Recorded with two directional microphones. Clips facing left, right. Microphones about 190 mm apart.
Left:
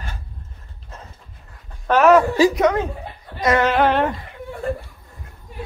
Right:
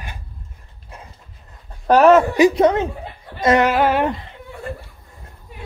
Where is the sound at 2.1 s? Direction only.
25° right (ahead or behind).